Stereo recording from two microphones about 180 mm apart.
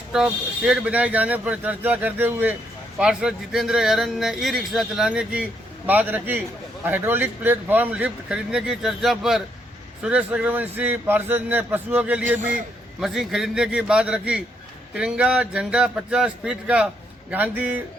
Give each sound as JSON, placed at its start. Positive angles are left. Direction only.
{"t": 0.1, "sound": "speech", "side_deg": -5}
{"t": 12.4, "sound": "a man's voice", "side_deg": -45}
{"t": 13.0, "sound": "speech", "side_deg": 0}